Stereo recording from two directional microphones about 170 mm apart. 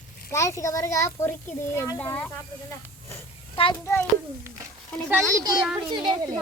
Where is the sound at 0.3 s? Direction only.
15° left (ahead or behind).